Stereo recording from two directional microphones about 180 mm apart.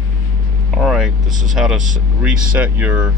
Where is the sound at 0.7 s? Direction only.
Centre (ahead or behind).